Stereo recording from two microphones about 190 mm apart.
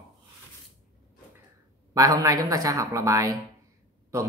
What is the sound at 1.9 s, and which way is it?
Speech, 20° right (ahead or behind).